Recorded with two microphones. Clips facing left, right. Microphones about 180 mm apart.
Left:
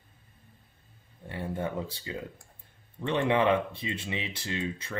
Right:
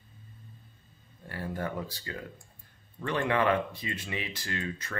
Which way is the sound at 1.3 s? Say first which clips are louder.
Left 2 dB; 25° left (ahead or behind).